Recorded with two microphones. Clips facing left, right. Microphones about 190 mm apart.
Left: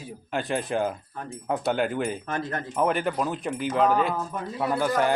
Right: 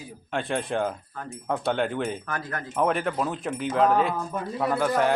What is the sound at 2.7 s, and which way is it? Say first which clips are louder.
Speech: even; centre (ahead or behind).